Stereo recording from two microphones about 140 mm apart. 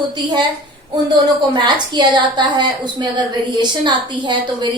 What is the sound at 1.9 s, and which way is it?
A woman's voice, 35° right (ahead or behind).